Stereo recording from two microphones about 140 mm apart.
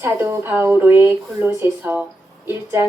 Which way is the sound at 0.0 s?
15° right (ahead or behind).